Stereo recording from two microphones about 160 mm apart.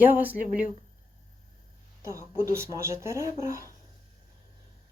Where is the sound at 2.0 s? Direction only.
20° right (ahead or behind).